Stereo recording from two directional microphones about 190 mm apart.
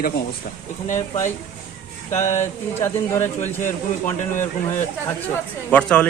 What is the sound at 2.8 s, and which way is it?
Speech, 10° left (ahead or behind).